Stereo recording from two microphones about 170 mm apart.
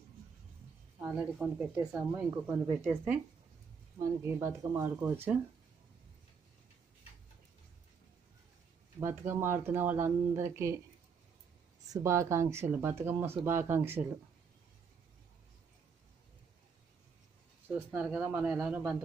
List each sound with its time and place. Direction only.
1.0 s speech: 10° right (ahead or behind)
9.0 s speech: 15° right (ahead or behind)
11.9 s speech: 15° right (ahead or behind)
17.6 s speech: 10° right (ahead or behind)